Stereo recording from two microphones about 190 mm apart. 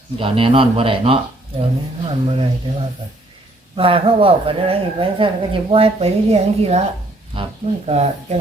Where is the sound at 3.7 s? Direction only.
30° right (ahead or behind).